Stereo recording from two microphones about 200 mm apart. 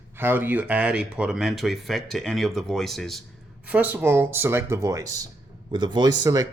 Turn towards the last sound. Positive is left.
turn(degrees=-20)  # may be behind; listen again after turning